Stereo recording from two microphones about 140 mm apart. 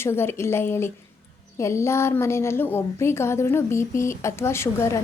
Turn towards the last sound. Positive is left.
turn(degrees=20)  # may be behind; listen again after turning